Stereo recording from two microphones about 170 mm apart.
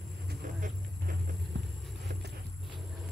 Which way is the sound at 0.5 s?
55° right (ahead or behind).